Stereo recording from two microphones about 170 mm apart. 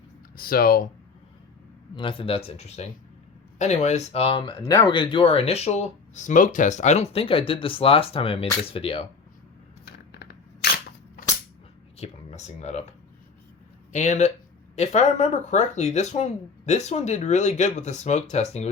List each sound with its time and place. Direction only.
0.3 s speech: 60° left (ahead or behind)
2.0 s speech: 30° left (ahead or behind)
9.8 s scissors: 75° left (ahead or behind)
11.9 s speech: 40° left (ahead or behind)
13.9 s speech: 45° left (ahead or behind)